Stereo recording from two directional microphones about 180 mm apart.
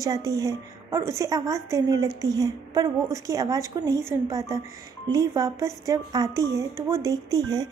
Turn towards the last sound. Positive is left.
turn(degrees=-20)  # may be behind; listen again after turning